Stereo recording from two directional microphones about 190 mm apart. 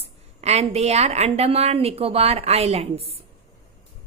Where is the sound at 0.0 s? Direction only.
35° right (ahead or behind).